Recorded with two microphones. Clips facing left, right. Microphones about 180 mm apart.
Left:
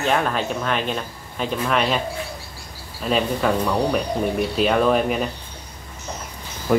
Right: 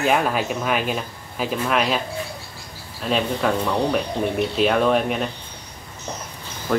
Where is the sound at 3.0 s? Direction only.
Centre (ahead or behind).